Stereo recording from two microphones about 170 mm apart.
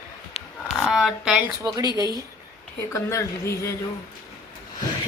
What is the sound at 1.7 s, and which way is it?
Speech, 20° right (ahead or behind).